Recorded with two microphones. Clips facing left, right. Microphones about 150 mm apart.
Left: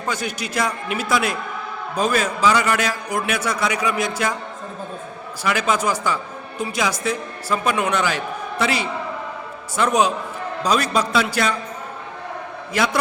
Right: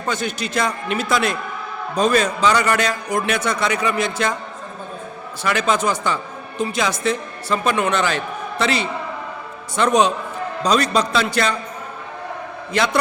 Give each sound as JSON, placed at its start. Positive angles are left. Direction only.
{"t": 0.0, "sound": "a man's voice", "side_deg": 10}
{"t": 5.4, "sound": "a man's voice", "side_deg": 10}
{"t": 12.7, "sound": "a man's voice", "side_deg": 5}